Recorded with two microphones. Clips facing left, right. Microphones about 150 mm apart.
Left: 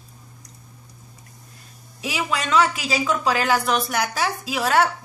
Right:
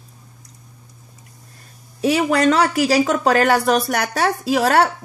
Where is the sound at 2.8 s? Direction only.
70° right (ahead or behind).